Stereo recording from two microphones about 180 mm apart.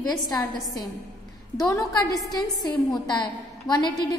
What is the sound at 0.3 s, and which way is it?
A woman's voice, 20° left (ahead or behind).